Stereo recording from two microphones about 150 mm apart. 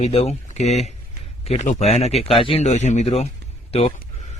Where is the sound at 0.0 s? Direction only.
45° left (ahead or behind).